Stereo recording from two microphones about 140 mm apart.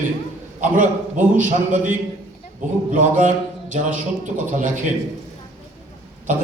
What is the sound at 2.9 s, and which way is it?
A man's voice, 60° right (ahead or behind).